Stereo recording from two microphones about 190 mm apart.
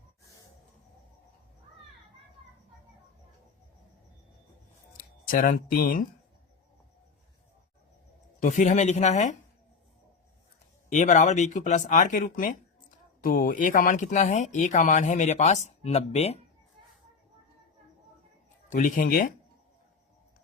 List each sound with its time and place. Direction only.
4.9 s speech: 45° left (ahead or behind)
8.4 s speech: 40° left (ahead or behind)
10.8 s speech: 40° left (ahead or behind)
18.7 s speech: 45° left (ahead or behind)